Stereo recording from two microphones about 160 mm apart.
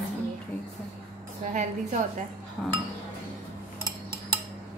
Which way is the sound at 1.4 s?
50° right (ahead or behind).